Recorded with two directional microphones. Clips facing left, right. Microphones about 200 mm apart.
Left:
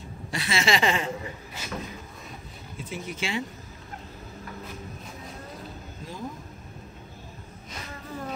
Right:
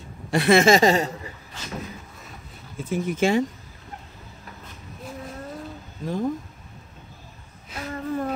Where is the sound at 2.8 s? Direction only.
50° right (ahead or behind).